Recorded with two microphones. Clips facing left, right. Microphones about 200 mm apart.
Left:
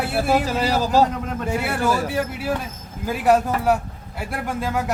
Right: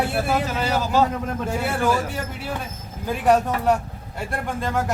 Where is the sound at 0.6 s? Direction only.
35° left (ahead or behind).